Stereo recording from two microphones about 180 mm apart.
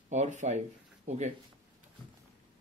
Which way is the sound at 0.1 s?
40° right (ahead or behind).